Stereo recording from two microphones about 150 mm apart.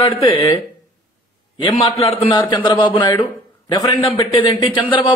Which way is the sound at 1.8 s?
45° left (ahead or behind).